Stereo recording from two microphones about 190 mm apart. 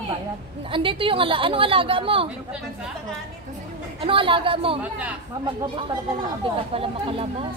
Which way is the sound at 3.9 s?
30° right (ahead or behind).